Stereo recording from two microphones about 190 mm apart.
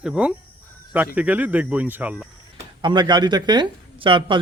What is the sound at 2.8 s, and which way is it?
Speech, 25° right (ahead or behind).